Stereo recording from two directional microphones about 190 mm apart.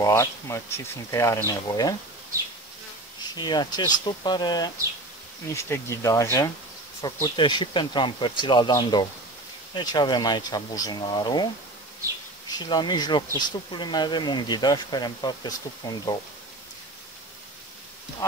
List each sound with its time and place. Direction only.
0.0 s speech: 15° left (ahead or behind)
3.2 s speech: 20° left (ahead or behind)